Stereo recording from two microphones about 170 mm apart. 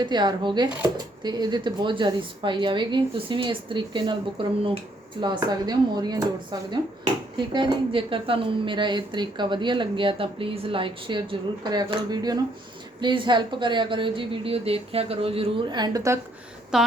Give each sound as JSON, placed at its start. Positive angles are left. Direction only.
{"t": 0.0, "sound": "a woman's voice", "side_deg": -25}
{"t": 16.7, "sound": "speech", "side_deg": -5}